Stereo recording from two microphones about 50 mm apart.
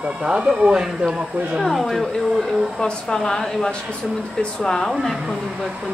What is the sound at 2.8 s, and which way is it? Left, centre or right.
A woman's voice, centre.